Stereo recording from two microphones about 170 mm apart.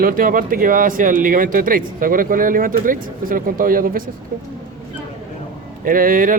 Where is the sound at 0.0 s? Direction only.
55° right (ahead or behind).